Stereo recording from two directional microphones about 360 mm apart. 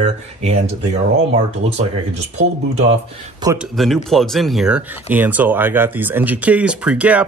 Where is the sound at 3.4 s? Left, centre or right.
Centre.